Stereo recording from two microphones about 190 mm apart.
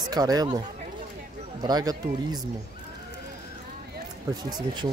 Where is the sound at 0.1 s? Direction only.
20° right (ahead or behind).